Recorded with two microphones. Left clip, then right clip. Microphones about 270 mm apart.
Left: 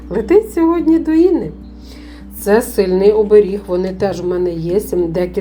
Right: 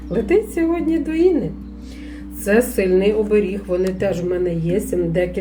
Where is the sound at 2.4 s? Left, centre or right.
Centre.